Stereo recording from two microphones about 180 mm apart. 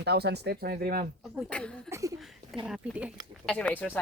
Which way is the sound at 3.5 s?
5° left (ahead or behind).